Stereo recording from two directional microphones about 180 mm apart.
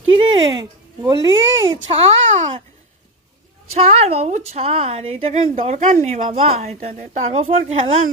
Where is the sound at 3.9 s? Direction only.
35° right (ahead or behind).